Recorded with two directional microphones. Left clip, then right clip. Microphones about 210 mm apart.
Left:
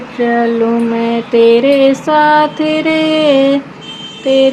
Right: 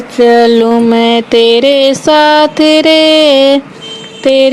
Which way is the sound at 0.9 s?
45° right (ahead or behind).